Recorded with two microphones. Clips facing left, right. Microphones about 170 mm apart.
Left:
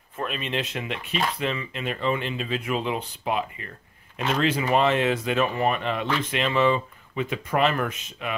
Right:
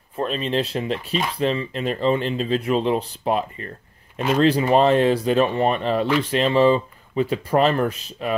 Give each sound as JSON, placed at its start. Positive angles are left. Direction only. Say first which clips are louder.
{"t": 0.1, "sound": "speech", "louder": "right 6 dB", "side_deg": -35}